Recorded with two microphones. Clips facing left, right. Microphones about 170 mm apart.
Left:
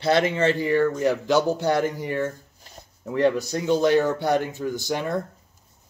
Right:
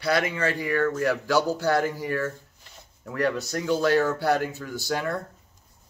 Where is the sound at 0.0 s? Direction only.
25° left (ahead or behind).